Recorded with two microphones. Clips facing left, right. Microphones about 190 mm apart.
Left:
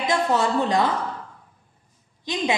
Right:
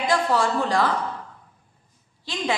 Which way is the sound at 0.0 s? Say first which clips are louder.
Even; 20° left (ahead or behind).